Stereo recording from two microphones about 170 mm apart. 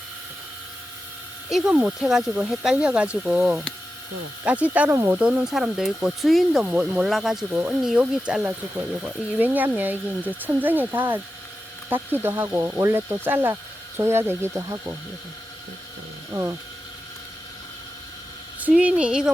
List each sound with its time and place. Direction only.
1.5 s speech: 5° right (ahead or behind)
16.3 s speech: 20° right (ahead or behind)
18.6 s speech: 10° right (ahead or behind)